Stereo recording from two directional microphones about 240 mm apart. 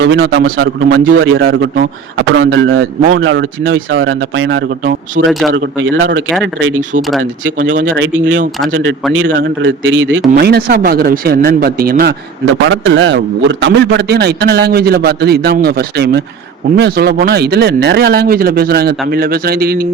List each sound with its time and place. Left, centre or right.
0.0 s a man's voice: right
7.6 s speech: right
8.7 s a man's voice: right
12.6 s a man's voice: right